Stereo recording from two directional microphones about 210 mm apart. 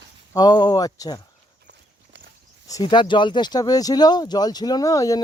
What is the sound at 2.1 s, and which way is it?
Walk, 60° right (ahead or behind).